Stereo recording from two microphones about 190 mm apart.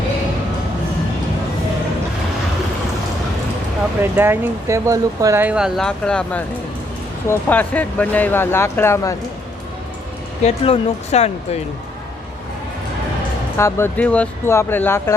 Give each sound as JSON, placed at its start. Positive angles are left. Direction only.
{"t": 4.0, "sound": "speech", "side_deg": -10}
{"t": 10.4, "sound": "speech", "side_deg": 35}
{"t": 13.6, "sound": "speech", "side_deg": 15}